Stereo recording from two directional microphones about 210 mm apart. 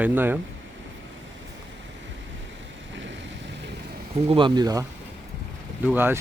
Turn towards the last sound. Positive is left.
turn(degrees=-10)  # may be behind; listen again after turning